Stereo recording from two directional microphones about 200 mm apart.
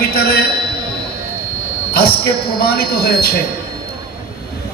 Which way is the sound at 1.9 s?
50° left (ahead or behind).